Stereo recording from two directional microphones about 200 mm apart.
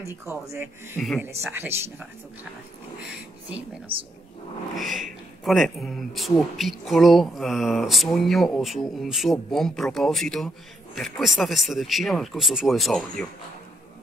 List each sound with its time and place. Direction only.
0.0 s speech: 15° right (ahead or behind)
0.9 s speech: 5° left (ahead or behind)
1.2 s speech: 10° right (ahead or behind)
3.9 s speech: 25° right (ahead or behind)
4.7 s speech: centre (ahead or behind)